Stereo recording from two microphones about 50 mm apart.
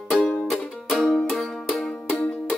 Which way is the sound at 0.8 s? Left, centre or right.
Centre.